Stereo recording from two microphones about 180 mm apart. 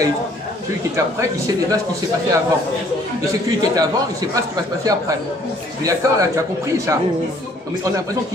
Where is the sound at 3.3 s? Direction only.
20° right (ahead or behind).